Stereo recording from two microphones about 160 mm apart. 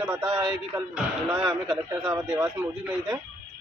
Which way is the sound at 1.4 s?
20° right (ahead or behind).